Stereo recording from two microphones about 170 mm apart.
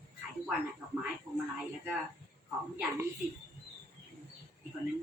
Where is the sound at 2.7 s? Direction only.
15° right (ahead or behind).